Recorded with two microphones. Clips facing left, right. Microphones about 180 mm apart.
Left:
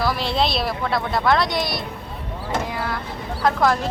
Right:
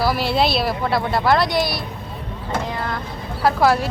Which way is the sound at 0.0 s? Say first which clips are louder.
Right 3 dB; 5° right (ahead or behind).